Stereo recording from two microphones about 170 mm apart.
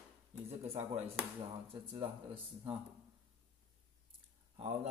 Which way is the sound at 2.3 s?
10° right (ahead or behind).